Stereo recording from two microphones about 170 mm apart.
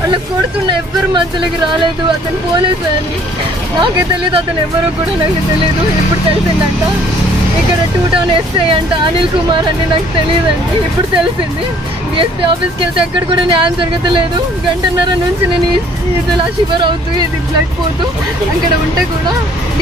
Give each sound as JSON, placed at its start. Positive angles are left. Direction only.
{"t": 3.8, "sound": "speech", "side_deg": -30}
{"t": 8.3, "sound": "speech", "side_deg": -30}
{"t": 12.9, "sound": "speech", "side_deg": -30}
{"t": 16.3, "sound": "speech", "side_deg": -30}